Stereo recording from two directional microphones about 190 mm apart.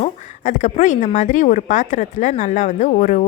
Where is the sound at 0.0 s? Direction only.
40° left (ahead or behind).